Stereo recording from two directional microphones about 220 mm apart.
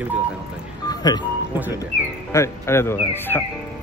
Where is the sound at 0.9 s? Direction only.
15° left (ahead or behind).